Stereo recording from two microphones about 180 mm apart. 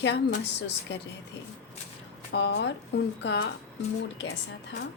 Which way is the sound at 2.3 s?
75° left (ahead or behind).